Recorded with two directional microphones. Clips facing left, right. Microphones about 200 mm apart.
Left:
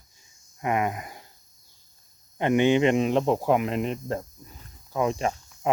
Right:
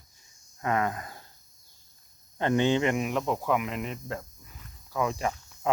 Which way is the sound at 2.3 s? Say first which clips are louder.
Left 4 dB; 15° left (ahead or behind).